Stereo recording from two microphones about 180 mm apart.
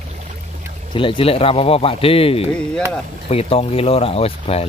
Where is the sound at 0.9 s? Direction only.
30° left (ahead or behind).